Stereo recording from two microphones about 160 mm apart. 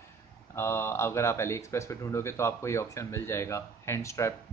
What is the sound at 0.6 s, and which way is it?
Speech, 15° left (ahead or behind).